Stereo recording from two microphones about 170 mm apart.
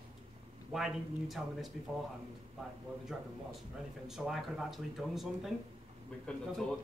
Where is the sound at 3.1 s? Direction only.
Centre (ahead or behind).